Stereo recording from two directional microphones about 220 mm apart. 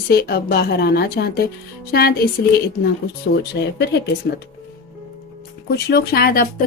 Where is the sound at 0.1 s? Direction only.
45° left (ahead or behind).